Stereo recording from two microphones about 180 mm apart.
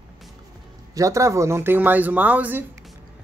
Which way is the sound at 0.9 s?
20° right (ahead or behind).